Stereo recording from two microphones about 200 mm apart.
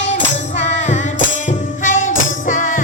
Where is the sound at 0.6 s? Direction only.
35° left (ahead or behind).